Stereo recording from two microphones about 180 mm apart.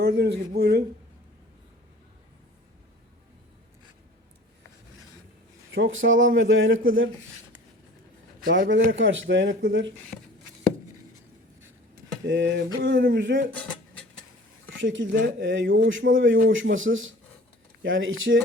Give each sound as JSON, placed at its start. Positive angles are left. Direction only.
{"t": 0.0, "sound": "speech", "side_deg": -70}
{"t": 5.7, "sound": "a man's voice", "side_deg": -90}
{"t": 8.4, "sound": "a man's voice", "side_deg": -75}
{"t": 12.2, "sound": "a man's voice", "side_deg": -90}
{"t": 13.6, "sound": "a sound", "side_deg": 5}
{"t": 14.7, "sound": "a man's voice", "side_deg": -90}